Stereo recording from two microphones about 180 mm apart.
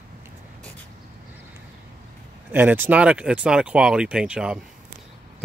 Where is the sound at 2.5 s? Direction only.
10° right (ahead or behind).